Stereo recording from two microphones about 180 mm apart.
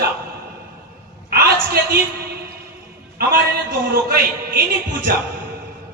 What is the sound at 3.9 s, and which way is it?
Speech, 55° right (ahead or behind).